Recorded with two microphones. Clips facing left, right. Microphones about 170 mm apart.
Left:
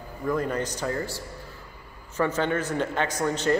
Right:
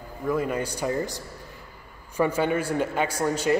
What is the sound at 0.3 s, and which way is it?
A man's voice, 10° right (ahead or behind).